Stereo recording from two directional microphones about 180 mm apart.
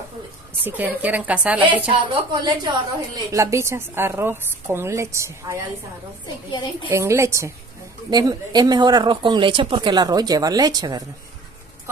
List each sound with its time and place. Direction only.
0.7 s a woman's voice: 10° right (ahead or behind)
1.6 s a woman's voice: 30° right (ahead or behind)
6.9 s a woman's voice: 15° right (ahead or behind)